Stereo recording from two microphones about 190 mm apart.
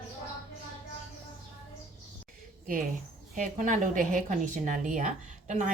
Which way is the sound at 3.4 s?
40° right (ahead or behind).